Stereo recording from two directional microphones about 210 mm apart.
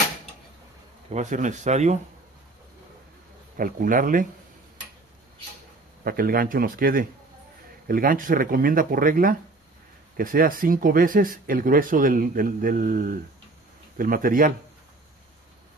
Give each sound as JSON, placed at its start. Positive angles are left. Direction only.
{"t": 1.1, "sound": "speech", "side_deg": -35}
{"t": 3.5, "sound": "speech", "side_deg": -40}
{"t": 6.0, "sound": "speech", "side_deg": -45}